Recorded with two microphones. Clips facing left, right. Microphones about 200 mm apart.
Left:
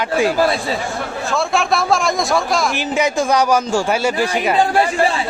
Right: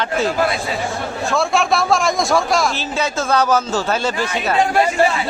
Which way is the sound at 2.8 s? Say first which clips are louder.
Left 4 dB; 15° left (ahead or behind).